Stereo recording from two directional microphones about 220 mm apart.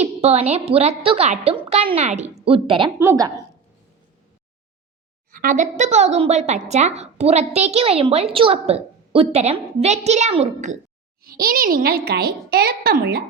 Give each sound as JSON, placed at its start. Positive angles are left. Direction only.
{"t": 0.0, "sound": "a woman's voice", "side_deg": -30}
{"t": 5.3, "sound": "a woman's voice", "side_deg": -40}
{"t": 11.2, "sound": "a child's voice", "side_deg": -40}